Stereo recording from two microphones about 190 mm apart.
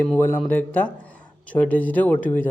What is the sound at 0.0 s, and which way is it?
Speech, 10° left (ahead or behind).